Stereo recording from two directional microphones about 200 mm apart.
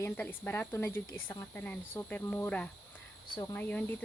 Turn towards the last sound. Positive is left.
turn(degrees=10)  # may be behind; listen again after turning